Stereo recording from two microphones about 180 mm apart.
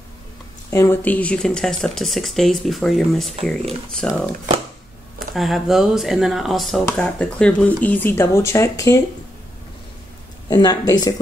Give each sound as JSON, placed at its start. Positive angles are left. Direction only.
{"t": 0.7, "sound": "speech", "side_deg": 15}
{"t": 5.3, "sound": "speech", "side_deg": 0}
{"t": 10.5, "sound": "speech", "side_deg": 20}